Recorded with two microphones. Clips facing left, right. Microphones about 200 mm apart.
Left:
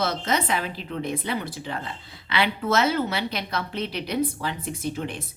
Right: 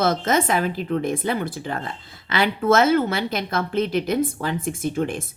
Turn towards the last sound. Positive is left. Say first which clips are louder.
# right 6 dB
turn(degrees=-50)  # may be behind; listen again after turning